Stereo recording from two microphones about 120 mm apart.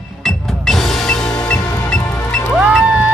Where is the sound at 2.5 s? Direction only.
5° right (ahead or behind).